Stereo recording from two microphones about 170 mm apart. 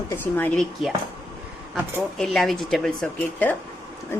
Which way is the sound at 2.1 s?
Centre (ahead or behind).